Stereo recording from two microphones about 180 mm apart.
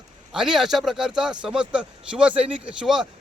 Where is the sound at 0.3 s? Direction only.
Centre (ahead or behind).